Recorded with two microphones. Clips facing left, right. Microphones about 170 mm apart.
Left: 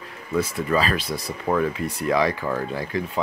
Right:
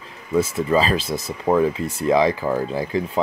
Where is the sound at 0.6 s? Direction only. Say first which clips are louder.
Right 4 dB; 25° right (ahead or behind).